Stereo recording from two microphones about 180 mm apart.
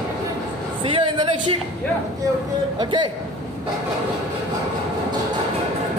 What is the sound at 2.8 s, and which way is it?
Speech, 25° right (ahead or behind).